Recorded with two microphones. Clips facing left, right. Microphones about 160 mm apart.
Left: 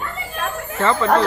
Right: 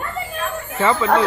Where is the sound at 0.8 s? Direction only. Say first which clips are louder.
Even; 10° right (ahead or behind).